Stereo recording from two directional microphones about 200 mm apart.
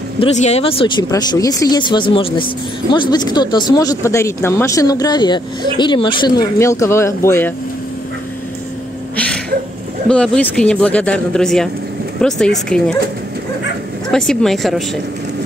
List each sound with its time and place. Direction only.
0.2 s speech: 30° left (ahead or behind)
6.6 s speech: 15° left (ahead or behind)
10.0 s speech: 5° left (ahead or behind)
14.1 s speech: 5° left (ahead or behind)